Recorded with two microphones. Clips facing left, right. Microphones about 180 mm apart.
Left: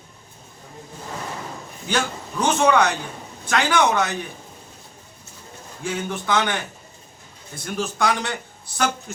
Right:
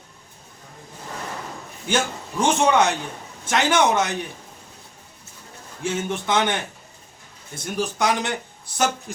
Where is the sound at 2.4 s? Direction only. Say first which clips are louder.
Even; 20° right (ahead or behind).